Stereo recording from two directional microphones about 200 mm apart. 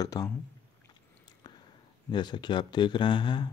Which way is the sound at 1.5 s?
20° left (ahead or behind).